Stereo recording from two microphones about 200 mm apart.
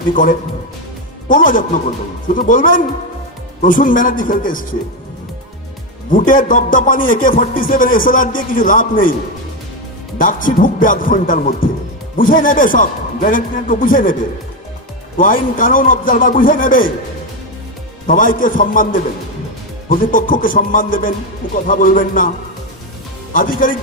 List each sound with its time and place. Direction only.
0.1 s a man's voice: 40° left (ahead or behind)
6.1 s speech: 40° left (ahead or behind)
10.2 s speech: 45° left (ahead or behind)
15.2 s speech: 45° left (ahead or behind)
18.0 s speech: 45° left (ahead or behind)
23.6 s speech: 45° left (ahead or behind)